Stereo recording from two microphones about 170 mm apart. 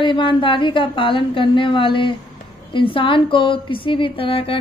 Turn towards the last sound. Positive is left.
turn(degrees=30)  # may be behind; listen again after turning